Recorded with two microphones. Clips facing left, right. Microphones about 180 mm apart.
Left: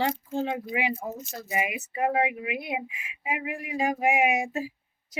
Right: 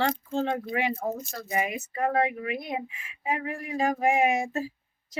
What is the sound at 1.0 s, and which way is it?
Speech, 50° right (ahead or behind).